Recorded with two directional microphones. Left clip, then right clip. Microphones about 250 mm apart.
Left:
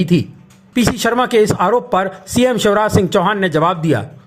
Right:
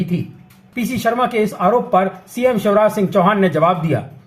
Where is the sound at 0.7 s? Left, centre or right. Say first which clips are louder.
Left 3 dB; left.